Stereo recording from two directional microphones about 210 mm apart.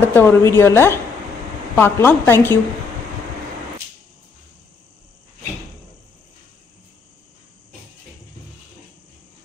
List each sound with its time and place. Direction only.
0.0 s a woman's voice: 10° left (ahead or behind)